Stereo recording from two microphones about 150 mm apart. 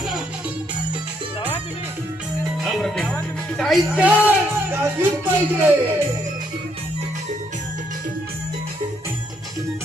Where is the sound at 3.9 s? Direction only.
10° right (ahead or behind).